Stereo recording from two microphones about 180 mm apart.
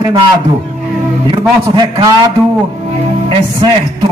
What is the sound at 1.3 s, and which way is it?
Speech, 25° right (ahead or behind).